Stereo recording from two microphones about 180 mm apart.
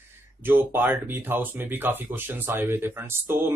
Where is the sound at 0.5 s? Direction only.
10° right (ahead or behind).